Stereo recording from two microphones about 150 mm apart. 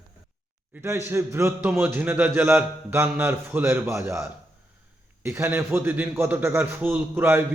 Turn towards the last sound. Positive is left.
turn(degrees=-15)  # may be behind; listen again after turning